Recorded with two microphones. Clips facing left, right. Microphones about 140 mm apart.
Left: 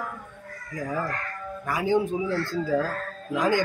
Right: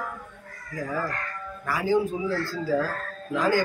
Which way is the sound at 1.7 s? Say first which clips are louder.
Even; 20° left (ahead or behind).